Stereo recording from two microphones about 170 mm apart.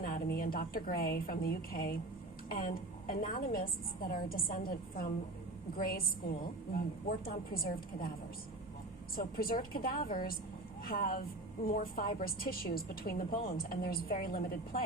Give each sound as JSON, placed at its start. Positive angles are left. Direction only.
{"t": 0.0, "sound": "a woman's voice", "side_deg": 60}
{"t": 9.1, "sound": "a woman's voice", "side_deg": 60}